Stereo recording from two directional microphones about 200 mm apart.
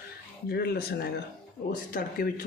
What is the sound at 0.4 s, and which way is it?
Speech, 50° left (ahead or behind).